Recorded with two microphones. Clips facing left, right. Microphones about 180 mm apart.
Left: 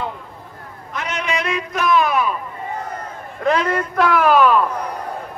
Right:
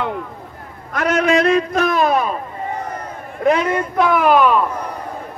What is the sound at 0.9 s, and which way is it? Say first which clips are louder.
A man's voice: right 9 dB; 50° right (ahead or behind).